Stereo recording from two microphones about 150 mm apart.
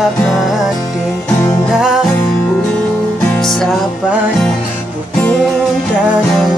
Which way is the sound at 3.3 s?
Centre (ahead or behind).